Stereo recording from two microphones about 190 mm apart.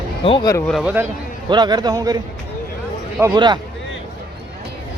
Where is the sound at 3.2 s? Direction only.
20° right (ahead or behind).